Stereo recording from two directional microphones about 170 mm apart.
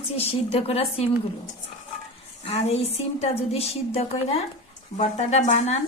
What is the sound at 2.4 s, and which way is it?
A woman's voice, 35° left (ahead or behind).